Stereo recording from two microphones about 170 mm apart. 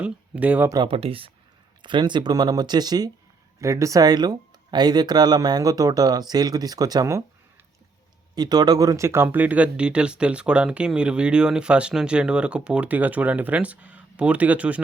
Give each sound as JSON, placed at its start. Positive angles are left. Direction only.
{"t": 0.0, "sound": "speech", "side_deg": -10}
{"t": 0.7, "sound": "speech", "side_deg": -30}
{"t": 8.4, "sound": "speech", "side_deg": -25}